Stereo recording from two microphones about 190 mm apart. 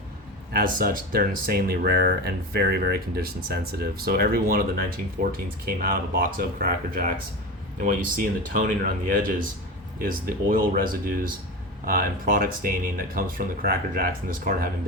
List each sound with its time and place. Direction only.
0.5 s speech: 50° right (ahead or behind)
11.9 s speech: 50° right (ahead or behind)